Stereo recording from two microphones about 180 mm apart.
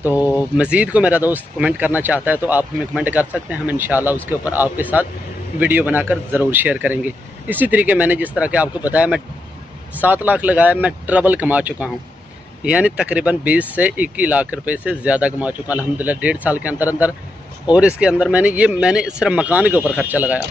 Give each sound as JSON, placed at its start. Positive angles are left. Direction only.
{"t": 0.1, "sound": "speech", "side_deg": 20}
{"t": 0.6, "sound": "speech", "side_deg": -5}